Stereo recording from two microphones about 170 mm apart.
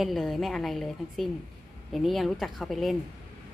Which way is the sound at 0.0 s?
Centre (ahead or behind).